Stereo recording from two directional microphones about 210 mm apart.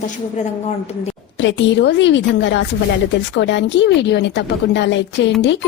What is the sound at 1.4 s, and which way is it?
A woman's voice, 55° left (ahead or behind).